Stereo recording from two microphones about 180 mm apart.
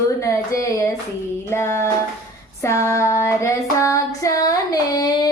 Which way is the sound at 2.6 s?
15° left (ahead or behind).